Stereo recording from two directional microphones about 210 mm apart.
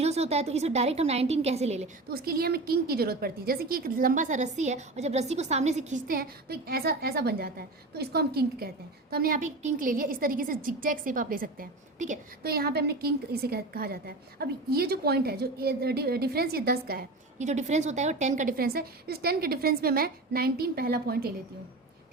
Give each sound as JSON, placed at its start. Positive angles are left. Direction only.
{"t": 0.0, "sound": "a woman's voice", "side_deg": -30}
{"t": 2.0, "sound": "a woman's voice", "side_deg": -45}